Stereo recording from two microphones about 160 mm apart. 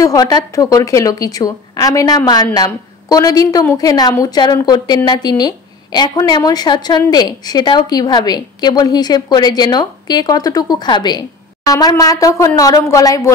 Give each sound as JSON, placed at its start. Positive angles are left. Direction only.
{"t": 0.0, "sound": "a woman's voice", "side_deg": 25}